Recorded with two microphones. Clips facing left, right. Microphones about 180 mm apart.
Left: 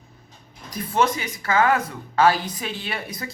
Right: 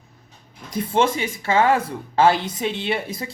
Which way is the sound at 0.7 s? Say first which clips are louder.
Right 2 dB; 30° right (ahead or behind).